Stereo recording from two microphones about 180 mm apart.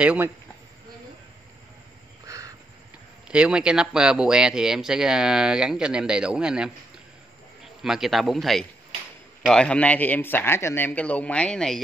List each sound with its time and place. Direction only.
0.0 s speech: 5° right (ahead or behind)
2.2 s crow: 20° right (ahead or behind)
3.3 s speech: 5° right (ahead or behind)
7.8 s a man's voice: centre (ahead or behind)